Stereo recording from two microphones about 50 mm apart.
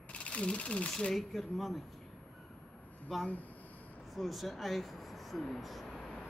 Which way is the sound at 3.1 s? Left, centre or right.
Centre.